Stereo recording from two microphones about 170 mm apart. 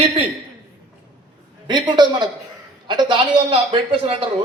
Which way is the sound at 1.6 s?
25° right (ahead or behind).